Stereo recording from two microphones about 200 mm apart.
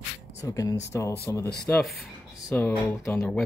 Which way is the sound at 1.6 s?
Centre (ahead or behind).